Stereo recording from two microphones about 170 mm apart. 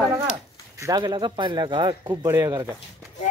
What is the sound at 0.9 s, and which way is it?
Speech, 25° right (ahead or behind).